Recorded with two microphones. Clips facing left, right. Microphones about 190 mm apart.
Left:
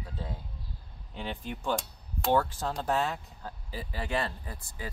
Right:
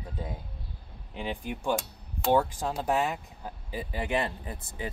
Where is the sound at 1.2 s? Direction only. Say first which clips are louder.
Right 3 dB; 15° right (ahead or behind).